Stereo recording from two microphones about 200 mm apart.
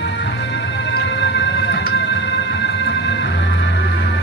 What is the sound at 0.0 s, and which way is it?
Music, 60° left (ahead or behind).